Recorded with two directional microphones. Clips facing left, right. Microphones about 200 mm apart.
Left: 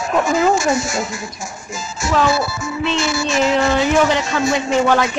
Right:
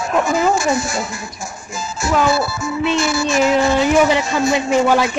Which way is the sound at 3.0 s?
55° right (ahead or behind).